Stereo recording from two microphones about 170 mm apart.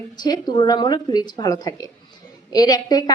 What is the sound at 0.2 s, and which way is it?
A woman's voice, 25° left (ahead or behind).